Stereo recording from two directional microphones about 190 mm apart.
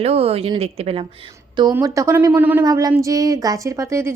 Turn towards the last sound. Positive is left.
turn(degrees=-15)  # may be behind; listen again after turning